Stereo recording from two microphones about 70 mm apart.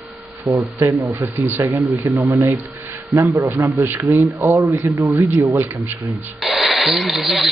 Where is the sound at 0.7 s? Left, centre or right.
Right.